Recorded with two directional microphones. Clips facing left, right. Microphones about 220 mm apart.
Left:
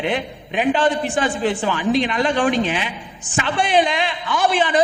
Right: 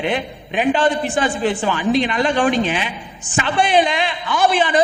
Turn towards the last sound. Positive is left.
turn(degrees=-10)  # may be behind; listen again after turning